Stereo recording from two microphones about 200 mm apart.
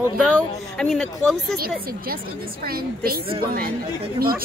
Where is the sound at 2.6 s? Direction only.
50° right (ahead or behind).